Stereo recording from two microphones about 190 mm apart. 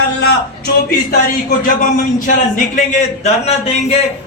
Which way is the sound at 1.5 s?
45° left (ahead or behind).